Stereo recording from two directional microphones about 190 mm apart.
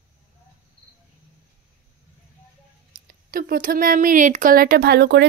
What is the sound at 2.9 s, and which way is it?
Speech, 50° right (ahead or behind).